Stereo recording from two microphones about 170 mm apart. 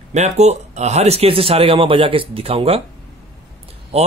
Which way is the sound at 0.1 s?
40° right (ahead or behind).